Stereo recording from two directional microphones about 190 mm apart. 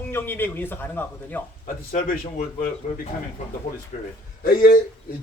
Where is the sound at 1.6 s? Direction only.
45° left (ahead or behind).